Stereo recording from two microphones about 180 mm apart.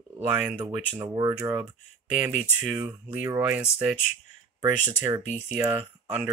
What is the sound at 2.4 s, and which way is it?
Speech, 5° right (ahead or behind).